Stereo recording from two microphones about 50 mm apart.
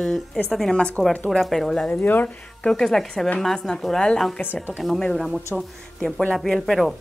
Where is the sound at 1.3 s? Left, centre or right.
Centre.